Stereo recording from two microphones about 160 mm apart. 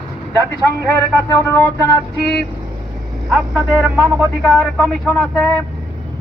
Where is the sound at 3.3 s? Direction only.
5° right (ahead or behind).